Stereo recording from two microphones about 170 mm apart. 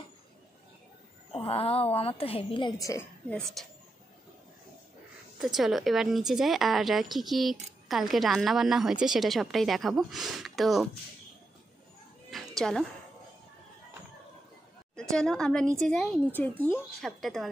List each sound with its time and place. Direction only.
1.3 s a woman's voice: 35° left (ahead or behind); by 3.3 s 15° left (ahead or behind)
3.6 s a woman's voice: centre (ahead or behind)
5.4 s a woman's voice: centre (ahead or behind)
12.3 s a sound: centre (ahead or behind)
15.0 s a woman's voice: 5° left (ahead or behind)
17.2 s a woman's voice: centre (ahead or behind)